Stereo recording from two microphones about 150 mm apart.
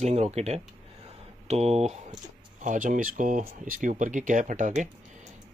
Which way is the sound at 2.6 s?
60° right (ahead or behind).